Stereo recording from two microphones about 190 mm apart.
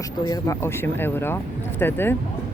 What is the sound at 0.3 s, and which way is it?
Speech, 20° left (ahead or behind).